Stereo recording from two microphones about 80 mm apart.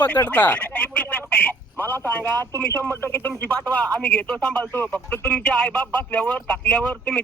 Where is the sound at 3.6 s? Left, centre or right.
Right.